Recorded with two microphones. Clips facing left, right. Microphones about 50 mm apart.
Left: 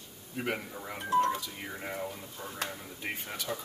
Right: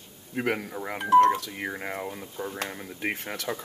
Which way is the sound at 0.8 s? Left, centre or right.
Right.